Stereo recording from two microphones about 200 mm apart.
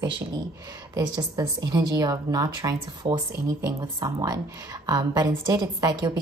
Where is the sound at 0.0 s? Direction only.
20° right (ahead or behind).